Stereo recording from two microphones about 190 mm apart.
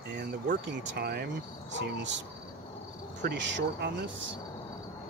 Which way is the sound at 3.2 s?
65° right (ahead or behind).